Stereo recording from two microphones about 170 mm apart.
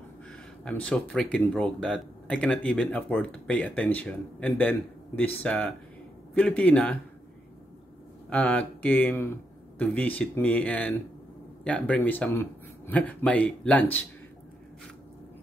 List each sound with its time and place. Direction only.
0.7 s speech: 5° left (ahead or behind)
8.3 s speech: 5° left (ahead or behind)